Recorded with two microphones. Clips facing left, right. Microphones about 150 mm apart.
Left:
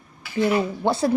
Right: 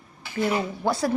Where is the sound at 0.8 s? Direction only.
25° left (ahead or behind).